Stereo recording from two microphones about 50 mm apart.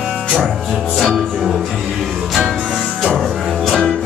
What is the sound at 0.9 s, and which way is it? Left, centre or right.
Music, centre.